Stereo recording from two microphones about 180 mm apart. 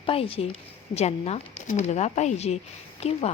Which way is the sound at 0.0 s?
30° left (ahead or behind).